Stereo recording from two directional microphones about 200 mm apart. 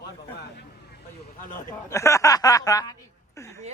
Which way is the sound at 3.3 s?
15° left (ahead or behind).